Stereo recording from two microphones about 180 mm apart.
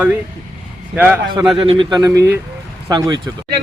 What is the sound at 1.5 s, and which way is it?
Speech, 30° right (ahead or behind).